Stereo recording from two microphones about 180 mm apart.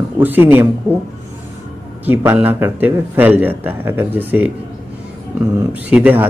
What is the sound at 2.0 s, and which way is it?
A man's voice, 10° right (ahead or behind).